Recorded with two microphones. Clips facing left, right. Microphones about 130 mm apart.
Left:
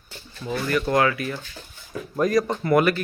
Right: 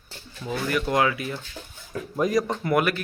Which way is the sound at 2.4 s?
5° right (ahead or behind).